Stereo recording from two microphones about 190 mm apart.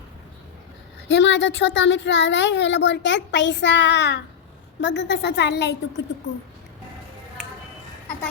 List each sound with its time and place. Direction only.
1.0 s a woman's voice: 70° left (ahead or behind)